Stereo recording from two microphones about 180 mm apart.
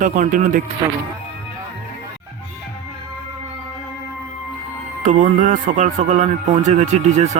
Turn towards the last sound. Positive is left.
turn(degrees=-40)  # may be behind; listen again after turning